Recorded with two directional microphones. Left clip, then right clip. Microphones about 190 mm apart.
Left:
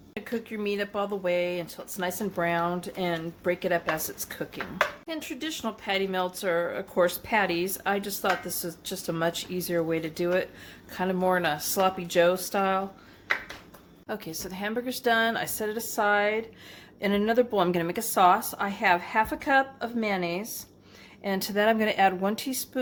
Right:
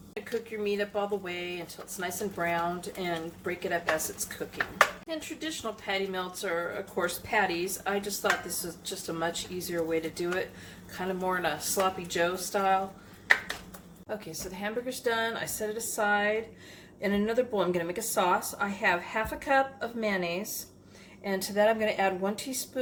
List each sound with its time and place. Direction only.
0.1 s speech: 50° left (ahead or behind)
14.1 s speech: 50° left (ahead or behind)